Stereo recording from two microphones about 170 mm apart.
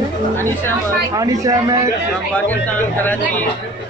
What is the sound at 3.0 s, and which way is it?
Speech, 10° left (ahead or behind).